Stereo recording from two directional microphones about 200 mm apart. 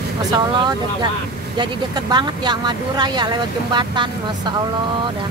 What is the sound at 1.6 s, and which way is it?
Speech, 20° right (ahead or behind).